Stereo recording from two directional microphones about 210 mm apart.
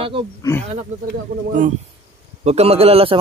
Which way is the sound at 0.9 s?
35° right (ahead or behind).